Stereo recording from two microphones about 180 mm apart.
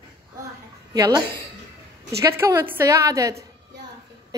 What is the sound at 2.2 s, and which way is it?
A woman's voice, 15° right (ahead or behind).